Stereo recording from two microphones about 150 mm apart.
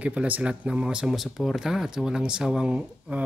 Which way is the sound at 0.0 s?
10° right (ahead or behind).